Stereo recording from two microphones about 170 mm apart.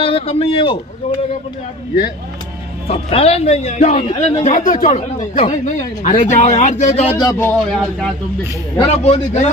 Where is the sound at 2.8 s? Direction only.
35° left (ahead or behind).